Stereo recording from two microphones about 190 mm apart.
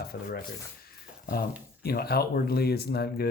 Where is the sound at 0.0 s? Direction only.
55° left (ahead or behind).